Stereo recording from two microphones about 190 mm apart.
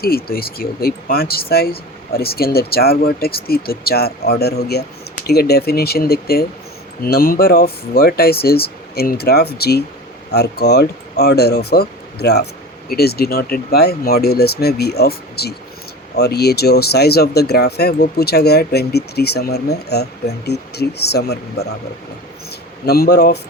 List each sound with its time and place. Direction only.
0.3 s speech: 50° left (ahead or behind)
22.9 s speech: 55° left (ahead or behind)